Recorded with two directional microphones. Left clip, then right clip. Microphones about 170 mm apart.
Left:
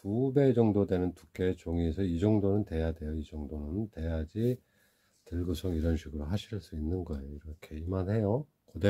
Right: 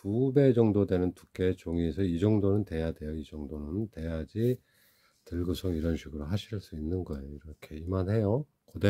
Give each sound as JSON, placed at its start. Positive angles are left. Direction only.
{"t": 0.0, "sound": "speech", "side_deg": -35}